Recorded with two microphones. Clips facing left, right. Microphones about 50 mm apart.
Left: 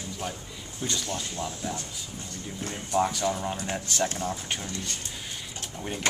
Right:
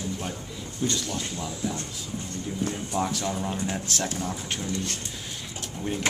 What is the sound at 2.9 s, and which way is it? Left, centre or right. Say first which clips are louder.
Speech: left 6 dB; centre.